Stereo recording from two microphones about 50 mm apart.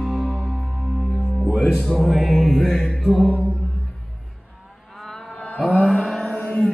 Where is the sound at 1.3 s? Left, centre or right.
Centre.